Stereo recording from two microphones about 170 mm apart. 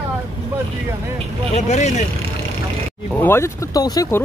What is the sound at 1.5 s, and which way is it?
Speech, 45° left (ahead or behind).